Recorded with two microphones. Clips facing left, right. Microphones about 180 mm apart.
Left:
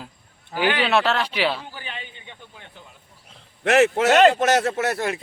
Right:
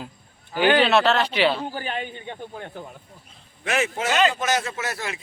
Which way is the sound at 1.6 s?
45° right (ahead or behind).